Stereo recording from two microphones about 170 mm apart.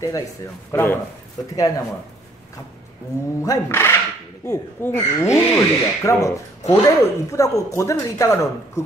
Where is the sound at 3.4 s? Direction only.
15° left (ahead or behind).